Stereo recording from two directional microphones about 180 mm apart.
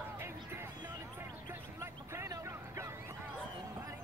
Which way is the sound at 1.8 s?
15° right (ahead or behind).